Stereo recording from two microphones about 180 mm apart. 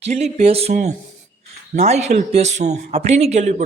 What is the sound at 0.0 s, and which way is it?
Speech, 40° right (ahead or behind).